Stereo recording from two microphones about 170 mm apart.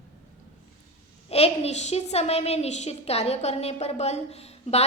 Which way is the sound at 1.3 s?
35° left (ahead or behind).